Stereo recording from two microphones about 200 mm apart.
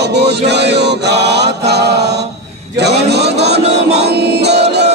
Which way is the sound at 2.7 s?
55° right (ahead or behind).